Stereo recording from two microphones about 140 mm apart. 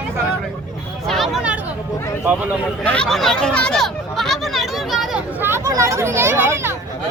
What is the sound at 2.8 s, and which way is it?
Speech, 5° left (ahead or behind).